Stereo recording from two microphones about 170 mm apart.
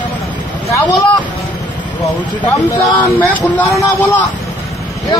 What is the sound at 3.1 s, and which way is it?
Speech, 15° left (ahead or behind).